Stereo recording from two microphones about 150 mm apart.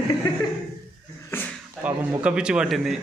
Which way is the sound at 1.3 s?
15° left (ahead or behind).